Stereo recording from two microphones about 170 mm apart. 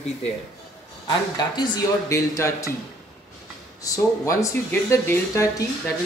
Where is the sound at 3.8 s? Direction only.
20° left (ahead or behind).